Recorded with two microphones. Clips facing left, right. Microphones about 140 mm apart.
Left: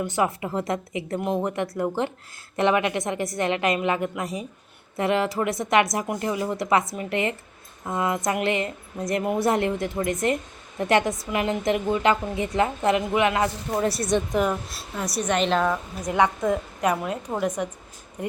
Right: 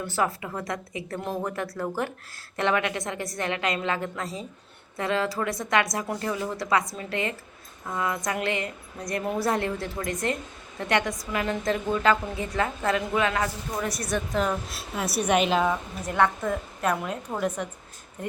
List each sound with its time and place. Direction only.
0.0 s a woman's voice: 20° left (ahead or behind)
14.7 s a woman's voice: 5° right (ahead or behind)
16.0 s a woman's voice: 15° left (ahead or behind)